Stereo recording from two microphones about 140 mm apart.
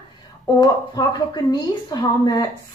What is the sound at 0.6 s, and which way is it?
A woman's voice, 30° left (ahead or behind).